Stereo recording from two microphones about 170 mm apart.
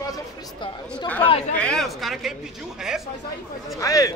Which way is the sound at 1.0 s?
10° left (ahead or behind).